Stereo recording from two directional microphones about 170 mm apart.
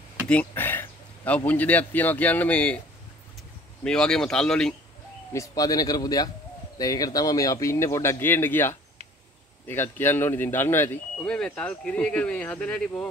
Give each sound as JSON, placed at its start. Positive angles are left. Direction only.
{"t": 0.3, "sound": "a man's voice", "side_deg": 10}
{"t": 3.8, "sound": "speech", "side_deg": 5}
{"t": 5.3, "sound": "speech", "side_deg": 20}